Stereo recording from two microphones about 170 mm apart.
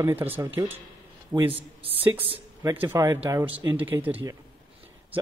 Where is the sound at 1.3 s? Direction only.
30° right (ahead or behind).